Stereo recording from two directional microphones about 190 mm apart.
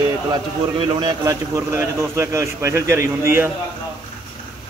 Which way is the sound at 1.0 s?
20° right (ahead or behind).